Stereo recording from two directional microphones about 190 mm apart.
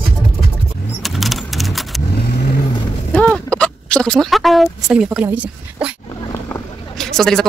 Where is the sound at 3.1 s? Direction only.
5° left (ahead or behind).